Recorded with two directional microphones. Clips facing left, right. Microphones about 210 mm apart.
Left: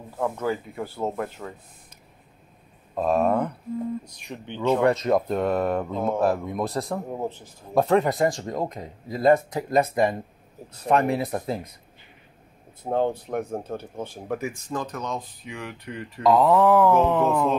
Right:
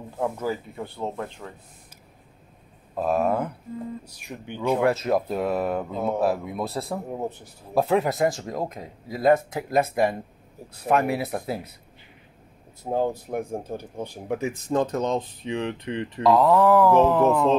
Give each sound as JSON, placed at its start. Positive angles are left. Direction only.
{"t": 0.4, "sound": "speech", "side_deg": 0}
{"t": 3.0, "sound": "speech", "side_deg": 0}
{"t": 12.9, "sound": "speech", "side_deg": -10}
{"t": 16.2, "sound": "speech", "side_deg": 0}